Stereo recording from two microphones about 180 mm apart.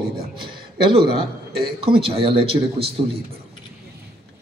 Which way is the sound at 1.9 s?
30° right (ahead or behind).